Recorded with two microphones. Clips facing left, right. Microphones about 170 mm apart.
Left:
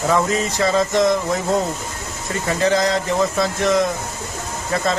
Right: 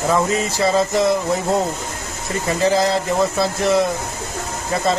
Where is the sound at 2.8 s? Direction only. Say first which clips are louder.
Right 1 dB; 35° right (ahead or behind).